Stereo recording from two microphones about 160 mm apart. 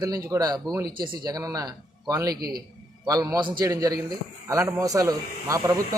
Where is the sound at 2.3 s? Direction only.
70° right (ahead or behind).